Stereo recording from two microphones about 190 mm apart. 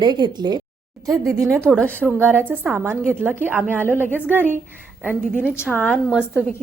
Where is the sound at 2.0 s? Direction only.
10° right (ahead or behind).